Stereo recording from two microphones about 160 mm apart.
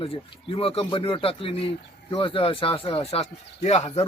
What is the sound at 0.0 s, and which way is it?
Speech, 35° left (ahead or behind).